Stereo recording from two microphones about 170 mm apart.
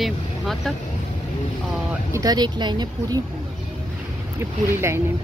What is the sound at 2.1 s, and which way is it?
Speech, 20° right (ahead or behind).